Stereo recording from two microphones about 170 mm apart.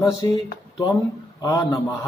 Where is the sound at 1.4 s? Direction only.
20° left (ahead or behind).